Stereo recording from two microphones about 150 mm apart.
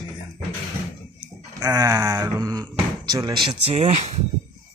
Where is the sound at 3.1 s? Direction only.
30° right (ahead or behind); by 4.1 s 45° right (ahead or behind).